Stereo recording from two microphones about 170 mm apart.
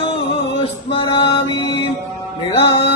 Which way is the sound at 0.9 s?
30° left (ahead or behind).